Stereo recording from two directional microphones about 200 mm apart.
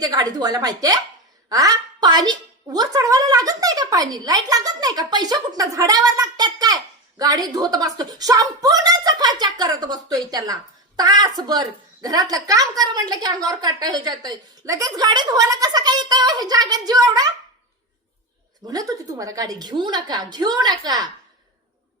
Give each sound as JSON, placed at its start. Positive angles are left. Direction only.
{"t": 0.0, "sound": "a woman's voice", "side_deg": -20}
{"t": 18.7, "sound": "a woman's voice", "side_deg": -20}